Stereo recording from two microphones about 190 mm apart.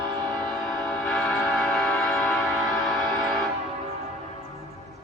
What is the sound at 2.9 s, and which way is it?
Music, centre (ahead or behind).